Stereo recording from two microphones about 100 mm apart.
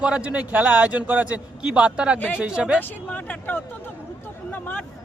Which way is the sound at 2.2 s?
15° left (ahead or behind).